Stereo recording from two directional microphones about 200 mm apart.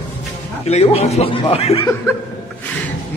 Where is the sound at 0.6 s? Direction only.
30° left (ahead or behind).